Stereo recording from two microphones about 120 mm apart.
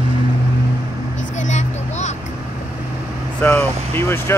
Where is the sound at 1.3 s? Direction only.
85° left.